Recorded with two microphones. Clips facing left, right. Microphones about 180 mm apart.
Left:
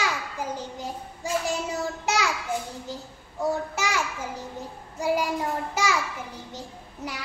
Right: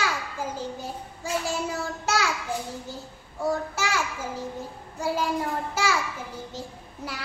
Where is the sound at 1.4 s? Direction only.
20° left (ahead or behind).